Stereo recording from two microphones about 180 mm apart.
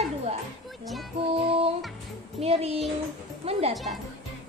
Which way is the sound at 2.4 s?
35° right (ahead or behind).